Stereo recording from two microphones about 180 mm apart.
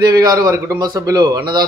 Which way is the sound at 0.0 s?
20° right (ahead or behind).